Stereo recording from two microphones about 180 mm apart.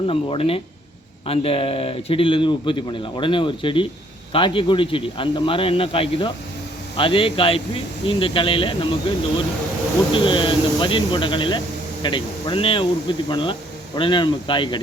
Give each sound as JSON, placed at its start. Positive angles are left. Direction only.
{"t": 0.1, "sound": "speech", "side_deg": 30}